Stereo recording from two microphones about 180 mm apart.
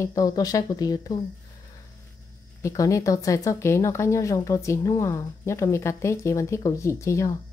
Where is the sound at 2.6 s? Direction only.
20° left (ahead or behind).